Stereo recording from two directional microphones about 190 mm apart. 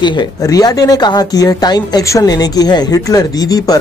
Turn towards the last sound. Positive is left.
turn(degrees=20)  # may be behind; listen again after turning